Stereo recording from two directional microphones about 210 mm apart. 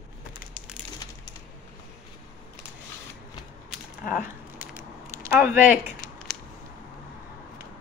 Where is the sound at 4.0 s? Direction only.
40° left (ahead or behind).